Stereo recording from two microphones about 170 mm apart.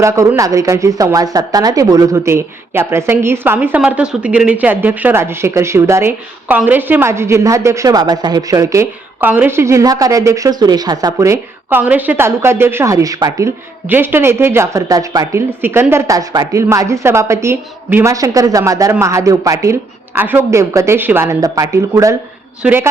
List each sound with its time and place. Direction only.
0.0 s a woman's voice: 15° right (ahead or behind)